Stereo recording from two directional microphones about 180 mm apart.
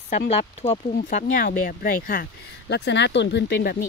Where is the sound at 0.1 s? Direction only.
35° left (ahead or behind); by 2.2 s 50° left (ahead or behind).